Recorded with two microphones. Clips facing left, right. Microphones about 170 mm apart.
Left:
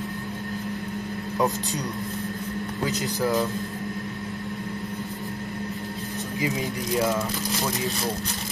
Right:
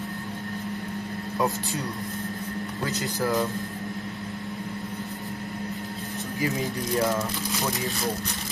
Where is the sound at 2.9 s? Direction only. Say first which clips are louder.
Left 1 dB; 15° left (ahead or behind).